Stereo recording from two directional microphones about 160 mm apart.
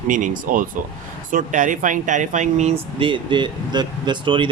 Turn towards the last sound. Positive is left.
turn(degrees=-30)  # may be behind; listen again after turning